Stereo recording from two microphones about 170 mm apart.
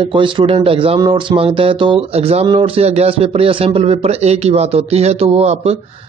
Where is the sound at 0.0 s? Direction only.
30° right (ahead or behind).